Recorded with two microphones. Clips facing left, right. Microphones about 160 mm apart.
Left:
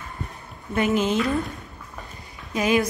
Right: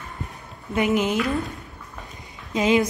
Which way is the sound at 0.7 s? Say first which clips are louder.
Even; 15° right (ahead or behind).